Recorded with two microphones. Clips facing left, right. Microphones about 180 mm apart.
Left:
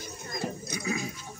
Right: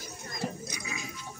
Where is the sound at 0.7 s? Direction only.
40° left (ahead or behind).